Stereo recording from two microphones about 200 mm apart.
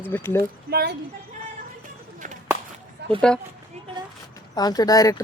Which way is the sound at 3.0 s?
55° right (ahead or behind).